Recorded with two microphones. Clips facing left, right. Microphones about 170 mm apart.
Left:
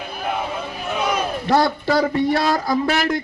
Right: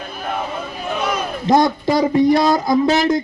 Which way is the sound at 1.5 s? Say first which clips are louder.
Right 4 dB; 15° right (ahead or behind).